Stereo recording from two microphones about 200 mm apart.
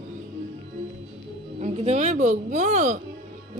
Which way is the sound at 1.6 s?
35° right (ahead or behind).